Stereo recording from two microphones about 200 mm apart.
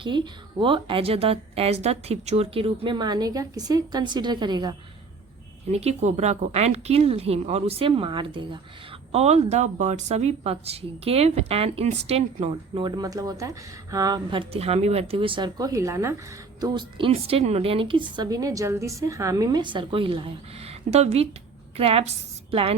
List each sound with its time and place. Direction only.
0.0 s a woman's voice: 25° right (ahead or behind)
5.7 s a woman's voice: 35° right (ahead or behind)